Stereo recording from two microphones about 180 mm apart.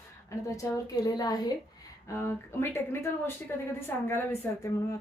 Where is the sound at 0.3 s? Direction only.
15° left (ahead or behind).